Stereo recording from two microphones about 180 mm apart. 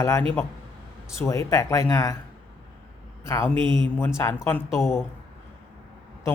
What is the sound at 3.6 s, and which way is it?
Speech, 25° right (ahead or behind).